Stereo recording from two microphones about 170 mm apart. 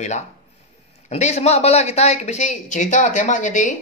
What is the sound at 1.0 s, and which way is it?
A woman's voice, 40° left (ahead or behind).